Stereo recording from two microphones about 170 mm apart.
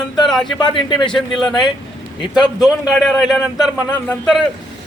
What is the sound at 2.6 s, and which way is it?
A man's voice, centre (ahead or behind).